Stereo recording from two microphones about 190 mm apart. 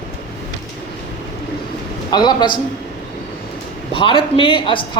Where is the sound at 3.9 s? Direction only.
30° left (ahead or behind).